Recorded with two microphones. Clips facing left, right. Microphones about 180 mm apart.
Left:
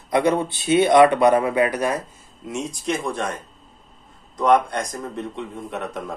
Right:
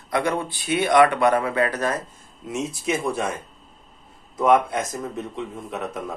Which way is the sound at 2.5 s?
Centre (ahead or behind).